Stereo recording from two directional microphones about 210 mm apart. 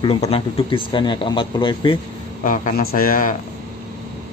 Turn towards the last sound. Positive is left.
turn(degrees=40)  # may be behind; listen again after turning